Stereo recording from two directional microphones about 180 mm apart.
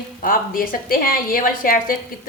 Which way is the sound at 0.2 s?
50° left (ahead or behind).